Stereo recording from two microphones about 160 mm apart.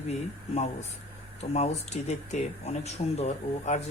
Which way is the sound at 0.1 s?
45° left (ahead or behind).